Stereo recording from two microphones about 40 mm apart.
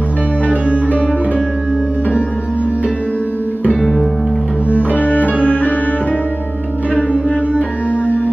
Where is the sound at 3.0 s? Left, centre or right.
Left.